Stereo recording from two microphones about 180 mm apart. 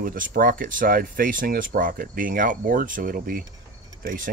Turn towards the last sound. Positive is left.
turn(degrees=-50)  # may be behind; listen again after turning